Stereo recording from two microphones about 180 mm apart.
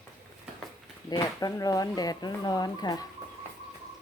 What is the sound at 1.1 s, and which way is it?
Speech, 20° left (ahead or behind).